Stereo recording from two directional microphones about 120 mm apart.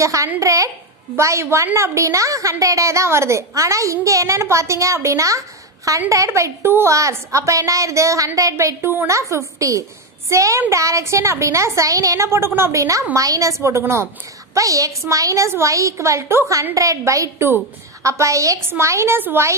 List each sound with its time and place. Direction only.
0.0 s a woman's voice: 25° right (ahead or behind)